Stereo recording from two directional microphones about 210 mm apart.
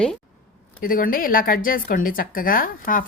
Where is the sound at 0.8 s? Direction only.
40° left (ahead or behind).